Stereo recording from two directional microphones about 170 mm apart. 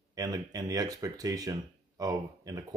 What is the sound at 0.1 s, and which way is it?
Speech, 20° right (ahead or behind).